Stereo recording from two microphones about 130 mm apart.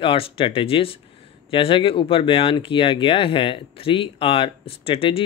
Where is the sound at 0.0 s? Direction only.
45° left (ahead or behind).